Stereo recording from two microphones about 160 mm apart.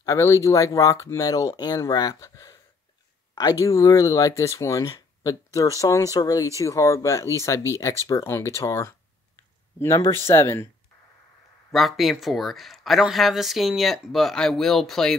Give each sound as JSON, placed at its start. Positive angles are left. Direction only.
{"t": 0.0, "sound": "speech", "side_deg": 20}
{"t": 3.6, "sound": "a man's voice", "side_deg": 20}
{"t": 11.7, "sound": "speech", "side_deg": 0}